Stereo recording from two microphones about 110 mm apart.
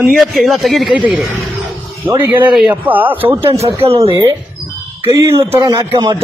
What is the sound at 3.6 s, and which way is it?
Speech, 60° right (ahead or behind).